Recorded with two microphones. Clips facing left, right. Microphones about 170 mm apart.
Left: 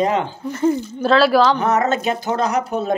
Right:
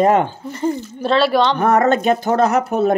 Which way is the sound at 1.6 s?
55° right (ahead or behind).